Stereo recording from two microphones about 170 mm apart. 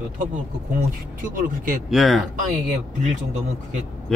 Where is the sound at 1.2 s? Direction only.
55° right (ahead or behind).